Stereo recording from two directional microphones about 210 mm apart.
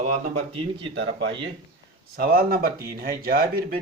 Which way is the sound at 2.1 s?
45° right (ahead or behind).